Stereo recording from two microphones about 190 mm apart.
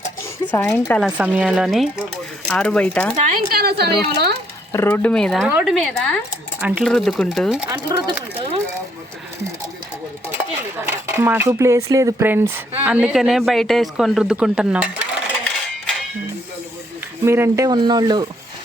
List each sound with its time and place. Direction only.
0.5 s speech: 10° left (ahead or behind)
1.1 s a man's voice: 10° right (ahead or behind)
3.2 s a woman's voice: 45° right (ahead or behind)
4.7 s a man's voice: 10° left (ahead or behind)
5.5 s speech: 10° right (ahead or behind)
5.7 s a man's voice: 5° left (ahead or behind)
7.7 s speech: 15° right (ahead or behind)
10.8 s a man's voice: 10° right (ahead or behind)
17.2 s speech: 15° right (ahead or behind)